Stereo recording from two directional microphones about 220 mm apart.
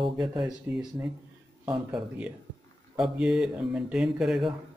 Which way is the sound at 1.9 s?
5° right (ahead or behind).